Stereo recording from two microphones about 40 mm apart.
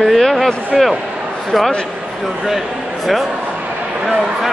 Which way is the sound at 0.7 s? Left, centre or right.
Centre.